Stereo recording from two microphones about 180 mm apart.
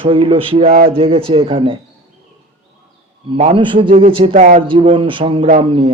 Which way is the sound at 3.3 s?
30° right (ahead or behind).